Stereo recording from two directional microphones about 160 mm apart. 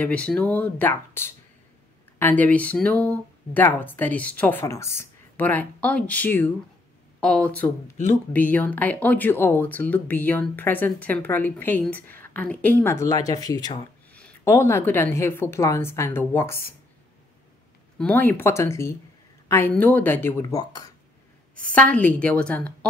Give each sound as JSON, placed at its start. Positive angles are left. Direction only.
{"t": 0.0, "sound": "speech", "side_deg": 5}
{"t": 17.9, "sound": "speech", "side_deg": 10}
{"t": 19.4, "sound": "a sound", "side_deg": 15}
{"t": 19.7, "sound": "speech", "side_deg": 10}
{"t": 21.7, "sound": "speech", "side_deg": 10}